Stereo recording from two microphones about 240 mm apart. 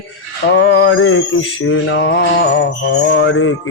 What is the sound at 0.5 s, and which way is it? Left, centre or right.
Music, left.